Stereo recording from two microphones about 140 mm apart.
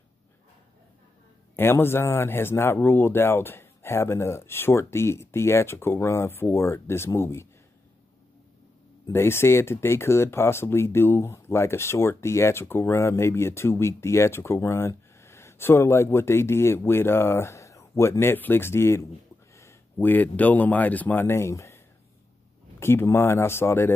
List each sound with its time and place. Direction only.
1.6 s speech: 15° left (ahead or behind)
9.0 s speech: 15° left (ahead or behind)